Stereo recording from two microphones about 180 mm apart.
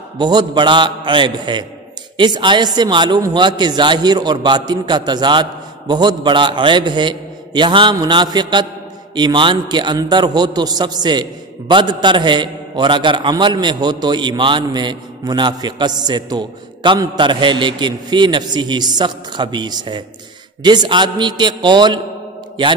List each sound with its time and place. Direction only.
0.2 s a man's voice: 25° right (ahead or behind)